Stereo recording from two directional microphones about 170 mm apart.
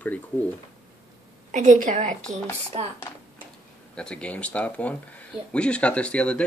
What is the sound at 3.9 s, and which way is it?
Speech, 5° left (ahead or behind).